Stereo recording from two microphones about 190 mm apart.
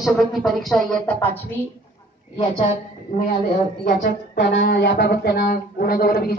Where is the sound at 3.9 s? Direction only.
65° left (ahead or behind).